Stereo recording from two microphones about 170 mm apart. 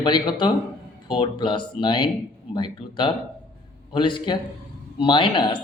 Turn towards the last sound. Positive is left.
turn(degrees=30)  # may be behind; listen again after turning